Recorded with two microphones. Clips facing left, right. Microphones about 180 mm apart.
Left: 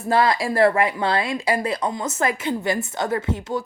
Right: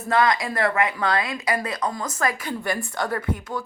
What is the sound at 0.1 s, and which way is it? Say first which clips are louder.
A woman's voice: left 2 dB; 30° left (ahead or behind).